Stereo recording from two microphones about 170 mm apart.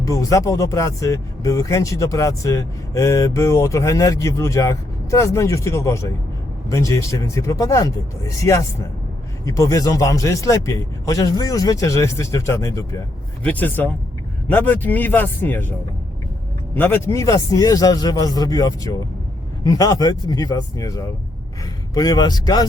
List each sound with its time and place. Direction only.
0.0 s speech: 20° left (ahead or behind)
16.7 s speech: 10° left (ahead or behind)